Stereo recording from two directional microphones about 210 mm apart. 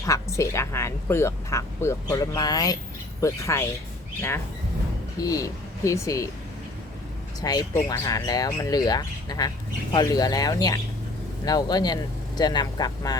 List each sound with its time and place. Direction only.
0.0 s speech: 15° left (ahead or behind)
5.2 s speech: 15° left (ahead or behind)
7.4 s speech: 20° left (ahead or behind)